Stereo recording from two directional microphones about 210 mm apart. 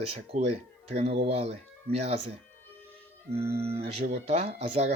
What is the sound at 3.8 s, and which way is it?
Speech, 30° right (ahead or behind).